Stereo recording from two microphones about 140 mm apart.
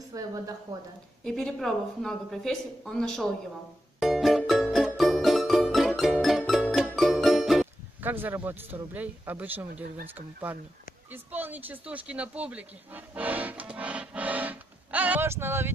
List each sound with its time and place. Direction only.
0.1 s a woman's voice: 25° right (ahead or behind)
1.2 s speech: 5° left (ahead or behind)
4.0 s music: centre (ahead or behind)
8.0 s speech: 15° right (ahead or behind)